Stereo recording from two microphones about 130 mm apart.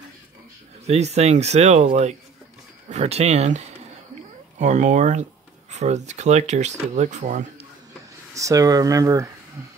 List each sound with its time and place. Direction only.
0.8 s speech: 55° right (ahead or behind)
2.9 s speech: 55° right (ahead or behind)
8.4 s speech: 25° right (ahead or behind)